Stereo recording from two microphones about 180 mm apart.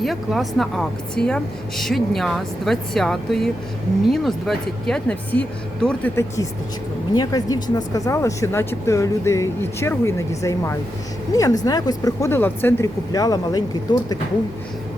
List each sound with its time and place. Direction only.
0.0 s speech: centre (ahead or behind); by 13.7 s 20° left (ahead or behind)